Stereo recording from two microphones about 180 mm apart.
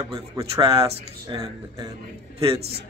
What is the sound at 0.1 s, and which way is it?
Speech, 20° right (ahead or behind).